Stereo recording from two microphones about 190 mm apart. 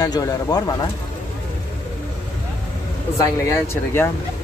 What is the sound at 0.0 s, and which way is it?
Speech, 20° left (ahead or behind).